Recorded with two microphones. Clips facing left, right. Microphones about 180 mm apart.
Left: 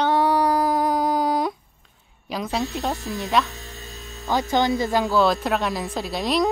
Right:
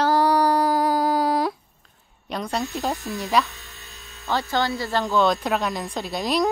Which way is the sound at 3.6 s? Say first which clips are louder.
Left 7 dB; 40° left (ahead or behind).